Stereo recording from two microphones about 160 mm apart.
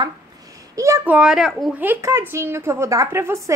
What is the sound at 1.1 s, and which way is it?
Speech, 5° right (ahead or behind).